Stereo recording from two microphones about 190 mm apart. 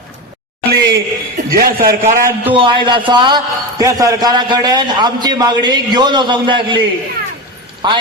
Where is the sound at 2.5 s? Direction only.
25° right (ahead or behind).